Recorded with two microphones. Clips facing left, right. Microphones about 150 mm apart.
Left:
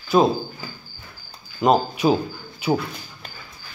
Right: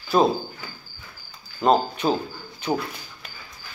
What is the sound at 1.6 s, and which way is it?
Speech, 5° left (ahead or behind).